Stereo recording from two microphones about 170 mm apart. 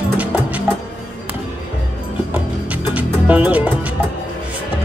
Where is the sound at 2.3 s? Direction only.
10° right (ahead or behind).